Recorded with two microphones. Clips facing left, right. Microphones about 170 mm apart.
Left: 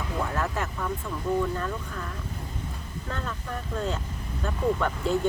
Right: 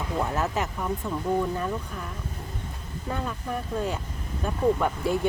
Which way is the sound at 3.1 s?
10° right (ahead or behind).